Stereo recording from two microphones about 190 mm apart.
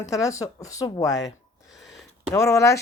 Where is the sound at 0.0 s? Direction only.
15° left (ahead or behind).